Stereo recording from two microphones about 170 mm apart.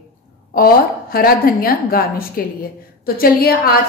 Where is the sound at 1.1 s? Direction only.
60° left (ahead or behind).